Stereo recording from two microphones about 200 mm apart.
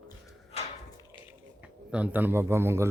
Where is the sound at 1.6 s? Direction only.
5° right (ahead or behind).